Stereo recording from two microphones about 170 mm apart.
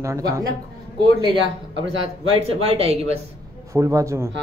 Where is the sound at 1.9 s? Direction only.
35° right (ahead or behind).